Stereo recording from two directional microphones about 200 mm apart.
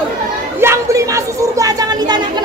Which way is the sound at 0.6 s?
15° right (ahead or behind).